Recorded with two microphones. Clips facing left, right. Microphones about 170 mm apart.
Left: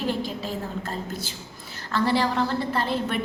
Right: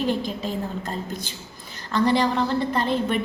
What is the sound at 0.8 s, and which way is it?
A woman's voice, 20° right (ahead or behind).